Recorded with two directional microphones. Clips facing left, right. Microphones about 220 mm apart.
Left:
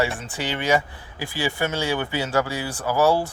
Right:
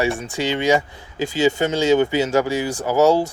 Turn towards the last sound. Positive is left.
turn(degrees=-20)  # may be behind; listen again after turning